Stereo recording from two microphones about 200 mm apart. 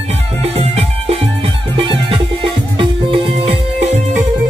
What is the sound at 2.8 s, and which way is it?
Music, 30° right (ahead or behind).